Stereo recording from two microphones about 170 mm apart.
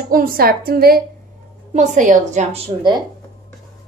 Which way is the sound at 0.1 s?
60° right (ahead or behind).